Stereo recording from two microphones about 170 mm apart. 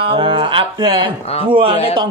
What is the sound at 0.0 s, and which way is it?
Speech, 30° right (ahead or behind).